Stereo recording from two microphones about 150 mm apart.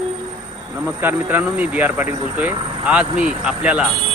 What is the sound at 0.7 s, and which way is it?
Speech, 15° right (ahead or behind).